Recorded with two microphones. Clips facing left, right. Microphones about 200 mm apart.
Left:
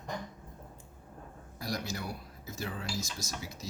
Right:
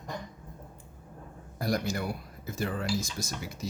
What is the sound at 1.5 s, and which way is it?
Speech, 55° right (ahead or behind).